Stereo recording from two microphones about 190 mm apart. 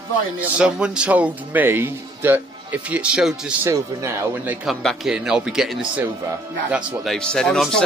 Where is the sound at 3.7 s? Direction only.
15° right (ahead or behind).